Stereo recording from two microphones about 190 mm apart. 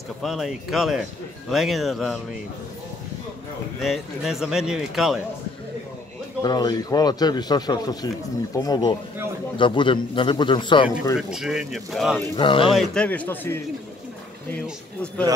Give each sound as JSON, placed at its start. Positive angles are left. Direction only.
{"t": 0.2, "sound": "speech", "side_deg": 0}
{"t": 3.8, "sound": "speech", "side_deg": 0}
{"t": 6.4, "sound": "speech", "side_deg": 20}
{"t": 11.1, "sound": "speech", "side_deg": -5}
{"t": 12.4, "sound": "speech", "side_deg": 25}
{"t": 12.7, "sound": "a man's voice", "side_deg": 5}